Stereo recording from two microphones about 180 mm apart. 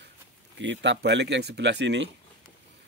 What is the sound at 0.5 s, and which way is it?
Speech, 90° right.